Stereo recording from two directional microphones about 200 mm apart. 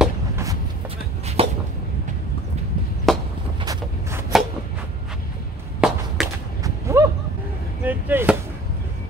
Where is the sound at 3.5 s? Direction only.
20° right (ahead or behind).